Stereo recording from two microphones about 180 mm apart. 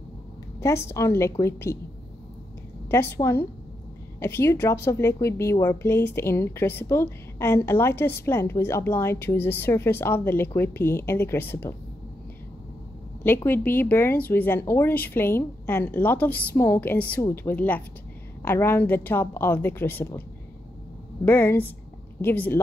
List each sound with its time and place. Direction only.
0.6 s a woman's voice: 15° left (ahead or behind)
2.9 s a woman's voice: 15° left (ahead or behind)
13.2 s a woman's voice: 10° left (ahead or behind)
21.3 s a woman's voice: 10° left (ahead or behind)